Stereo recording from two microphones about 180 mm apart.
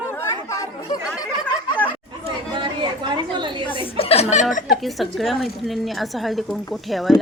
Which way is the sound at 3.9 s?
35° left (ahead or behind).